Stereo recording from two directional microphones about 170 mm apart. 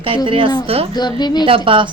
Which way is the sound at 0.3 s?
30° right (ahead or behind).